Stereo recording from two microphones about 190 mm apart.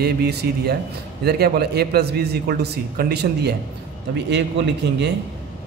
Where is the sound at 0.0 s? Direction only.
60° right (ahead or behind).